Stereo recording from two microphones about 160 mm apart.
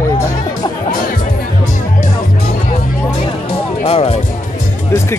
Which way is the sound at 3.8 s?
35° left (ahead or behind).